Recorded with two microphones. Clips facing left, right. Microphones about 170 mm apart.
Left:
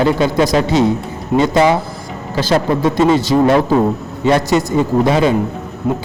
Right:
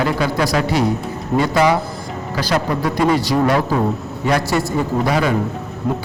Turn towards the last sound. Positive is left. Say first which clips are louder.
# left 3 dB
turn(degrees=5)  # may be behind; listen again after turning